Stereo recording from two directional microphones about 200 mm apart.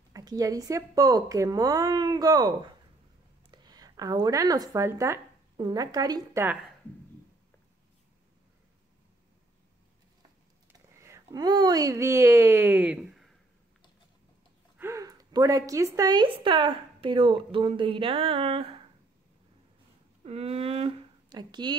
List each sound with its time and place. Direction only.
0.1 s a woman's voice: 20° right (ahead or behind)
11.0 s speech: 15° right (ahead or behind)
14.8 s a woman's voice: 15° right (ahead or behind)
20.2 s speech: 30° right (ahead or behind)